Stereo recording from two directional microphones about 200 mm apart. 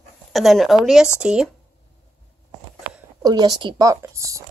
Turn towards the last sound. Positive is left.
turn(degrees=-15)  # may be behind; listen again after turning